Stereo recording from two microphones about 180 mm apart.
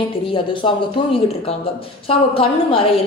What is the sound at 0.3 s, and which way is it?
A woman's voice, 25° left (ahead or behind).